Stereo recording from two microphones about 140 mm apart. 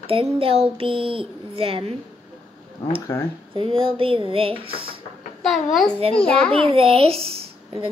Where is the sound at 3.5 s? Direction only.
40° right (ahead or behind).